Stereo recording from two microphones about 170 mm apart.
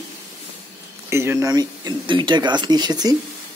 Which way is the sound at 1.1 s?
15° right (ahead or behind).